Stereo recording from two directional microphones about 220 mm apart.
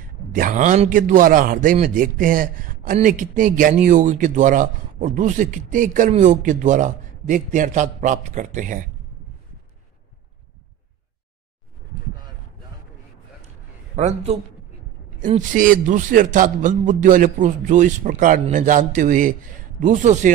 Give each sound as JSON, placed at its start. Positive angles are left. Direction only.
{"t": 0.3, "sound": "a man's voice", "side_deg": -35}
{"t": 13.9, "sound": "a man's voice", "side_deg": -30}